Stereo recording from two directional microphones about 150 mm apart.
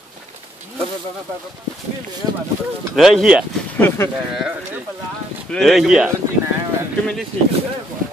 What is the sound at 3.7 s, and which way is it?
Speech, 15° left (ahead or behind).